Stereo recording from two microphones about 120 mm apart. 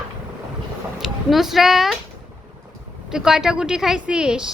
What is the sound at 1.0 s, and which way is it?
Speech, centre (ahead or behind).